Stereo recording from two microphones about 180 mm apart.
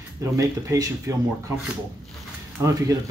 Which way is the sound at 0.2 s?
20° right (ahead or behind).